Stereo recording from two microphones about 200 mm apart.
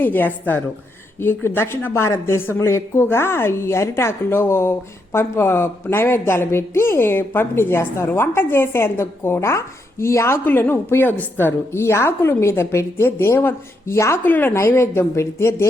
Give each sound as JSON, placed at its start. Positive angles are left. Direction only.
{"t": 0.0, "sound": "a woman's voice", "side_deg": 10}